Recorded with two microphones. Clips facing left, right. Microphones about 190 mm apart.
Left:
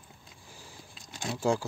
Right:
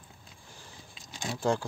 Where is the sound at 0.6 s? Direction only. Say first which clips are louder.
Left 1 dB; 5° left (ahead or behind).